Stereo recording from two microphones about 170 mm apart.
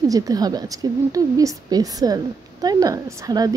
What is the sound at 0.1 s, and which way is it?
Speech, 20° right (ahead or behind).